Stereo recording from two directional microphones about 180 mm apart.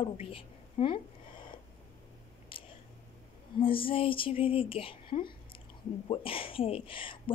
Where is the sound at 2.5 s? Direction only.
30° left (ahead or behind).